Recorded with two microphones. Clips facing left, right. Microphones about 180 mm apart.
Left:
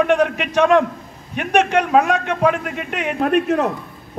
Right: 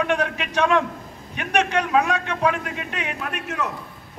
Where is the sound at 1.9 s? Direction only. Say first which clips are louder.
Left 4 dB; 45° left (ahead or behind).